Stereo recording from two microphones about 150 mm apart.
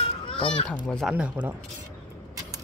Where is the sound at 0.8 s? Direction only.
5° left (ahead or behind).